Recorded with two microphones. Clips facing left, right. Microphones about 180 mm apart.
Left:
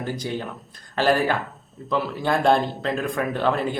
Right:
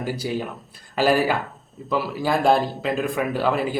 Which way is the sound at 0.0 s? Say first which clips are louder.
Right 2 dB; 10° right (ahead or behind).